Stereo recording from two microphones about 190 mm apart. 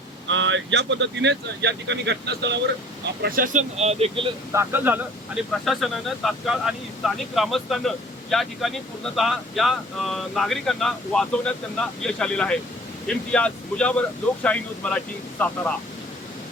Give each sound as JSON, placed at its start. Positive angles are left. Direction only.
{"t": 0.3, "sound": "speech", "side_deg": -80}
{"t": 3.2, "sound": "speech", "side_deg": -45}
{"t": 4.5, "sound": "speech", "side_deg": -10}
{"t": 5.6, "sound": "speech", "side_deg": 0}